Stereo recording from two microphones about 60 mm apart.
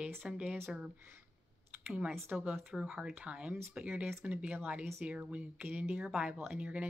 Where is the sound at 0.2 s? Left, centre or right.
Centre.